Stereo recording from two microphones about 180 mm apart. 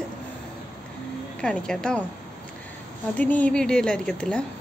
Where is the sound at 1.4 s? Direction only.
5° left (ahead or behind).